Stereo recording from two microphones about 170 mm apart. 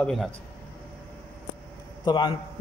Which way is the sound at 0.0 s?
Centre (ahead or behind).